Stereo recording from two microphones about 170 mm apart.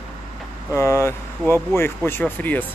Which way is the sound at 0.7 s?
15° left (ahead or behind).